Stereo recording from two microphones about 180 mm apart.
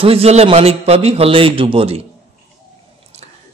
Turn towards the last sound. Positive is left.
turn(degrees=-35)  # may be behind; listen again after turning